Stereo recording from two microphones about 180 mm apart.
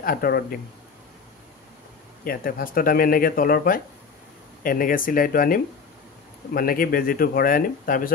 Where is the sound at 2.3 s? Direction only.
55° left (ahead or behind).